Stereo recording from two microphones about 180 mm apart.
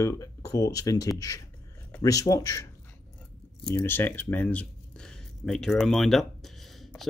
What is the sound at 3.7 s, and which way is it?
Speech, 10° left (ahead or behind).